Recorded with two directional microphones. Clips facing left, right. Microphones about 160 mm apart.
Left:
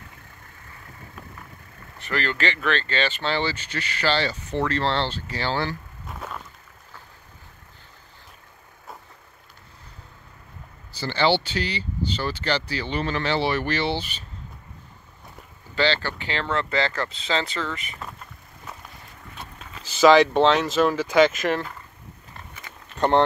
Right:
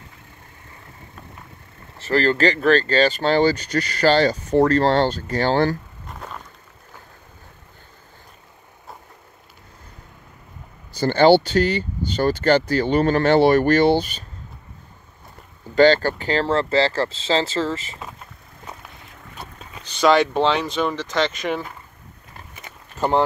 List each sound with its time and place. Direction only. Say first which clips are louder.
2.0 s speech: right 8 dB; 35° right (ahead or behind)
6.0 s a sound: left 1 dB; centre (ahead or behind)
11.0 s speech: right 8 dB; 45° right (ahead or behind)
15.7 s speech: right 9 dB; 45° right (ahead or behind)
19.8 s speech: left 2 dB; 5° left (ahead or behind)
22.9 s speech: even; 5° right (ahead or behind)